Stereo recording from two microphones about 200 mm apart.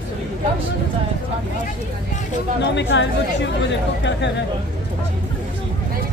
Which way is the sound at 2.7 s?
60° left (ahead or behind).